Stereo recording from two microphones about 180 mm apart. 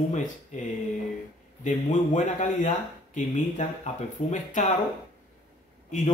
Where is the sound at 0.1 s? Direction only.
45° left (ahead or behind).